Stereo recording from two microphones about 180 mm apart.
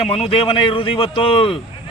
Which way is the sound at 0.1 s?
30° left (ahead or behind).